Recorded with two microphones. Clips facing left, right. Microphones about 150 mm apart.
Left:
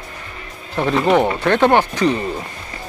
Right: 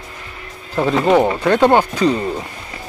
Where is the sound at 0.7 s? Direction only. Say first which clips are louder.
Right 2 dB; 5° right (ahead or behind).